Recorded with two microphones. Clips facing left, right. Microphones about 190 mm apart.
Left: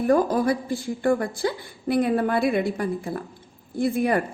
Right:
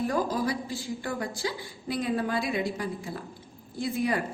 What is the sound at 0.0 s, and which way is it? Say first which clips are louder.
A woman's voice: left 7 dB; 55° left (ahead or behind).